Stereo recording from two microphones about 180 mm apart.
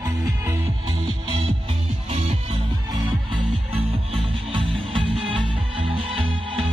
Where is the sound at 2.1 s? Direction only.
35° right (ahead or behind).